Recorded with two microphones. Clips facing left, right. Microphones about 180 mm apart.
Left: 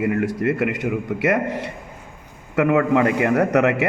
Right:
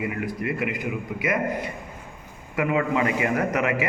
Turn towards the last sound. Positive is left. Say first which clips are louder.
# left 6 dB
turn(degrees=70)  # may be behind; listen again after turning